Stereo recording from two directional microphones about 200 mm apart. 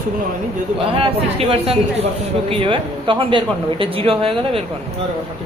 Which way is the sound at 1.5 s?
30° right (ahead or behind).